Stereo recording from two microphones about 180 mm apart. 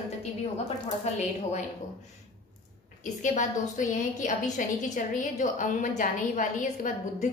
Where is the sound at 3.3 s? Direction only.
45° left (ahead or behind).